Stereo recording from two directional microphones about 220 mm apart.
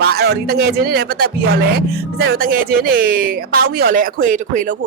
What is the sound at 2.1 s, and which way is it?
Speech, 45° right (ahead or behind).